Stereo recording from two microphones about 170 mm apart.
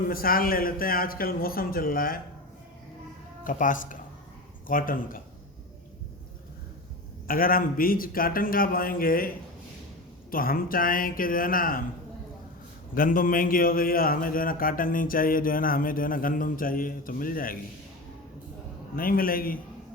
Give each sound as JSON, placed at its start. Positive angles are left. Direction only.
{"t": 0.1, "sound": "a man's voice", "side_deg": 60}
{"t": 3.4, "sound": "a man's voice", "side_deg": 50}
{"t": 7.3, "sound": "a man's voice", "side_deg": 55}
{"t": 10.3, "sound": "a man's voice", "side_deg": 60}
{"t": 12.9, "sound": "a man's voice", "side_deg": 55}
{"t": 18.9, "sound": "a man's voice", "side_deg": 60}